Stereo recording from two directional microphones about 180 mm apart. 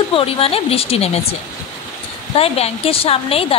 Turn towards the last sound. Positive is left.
turn(degrees=30)  # may be behind; listen again after turning